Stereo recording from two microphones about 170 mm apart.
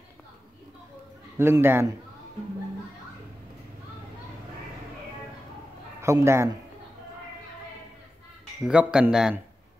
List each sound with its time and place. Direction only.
1.4 s a man's voice: 15° right (ahead or behind)
5.9 s a man's voice: 15° right (ahead or behind)
8.6 s speech: 5° right (ahead or behind)